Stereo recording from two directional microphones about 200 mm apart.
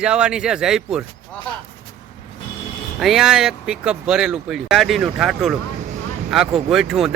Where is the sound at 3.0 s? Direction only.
Centre (ahead or behind).